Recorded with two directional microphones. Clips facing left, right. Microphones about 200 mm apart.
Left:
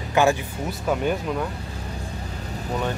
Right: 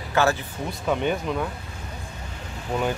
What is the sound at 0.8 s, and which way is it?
Speech, 5° left (ahead or behind).